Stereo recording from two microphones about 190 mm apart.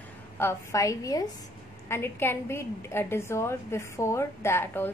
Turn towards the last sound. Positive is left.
turn(degrees=10)  # may be behind; listen again after turning